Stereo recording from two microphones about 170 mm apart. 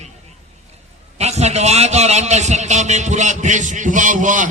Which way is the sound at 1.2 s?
40° right (ahead or behind).